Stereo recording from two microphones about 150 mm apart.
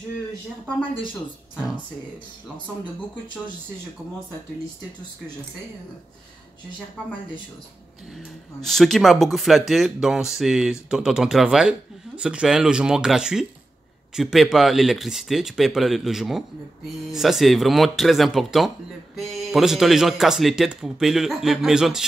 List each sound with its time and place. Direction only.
2.5 s speech: 30° right (ahead or behind)
8.1 s speech: centre (ahead or behind)